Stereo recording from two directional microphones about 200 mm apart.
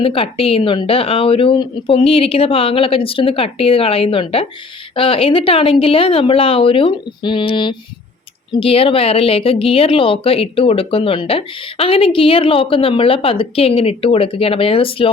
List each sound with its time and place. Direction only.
0.0 s speech: 30° left (ahead or behind)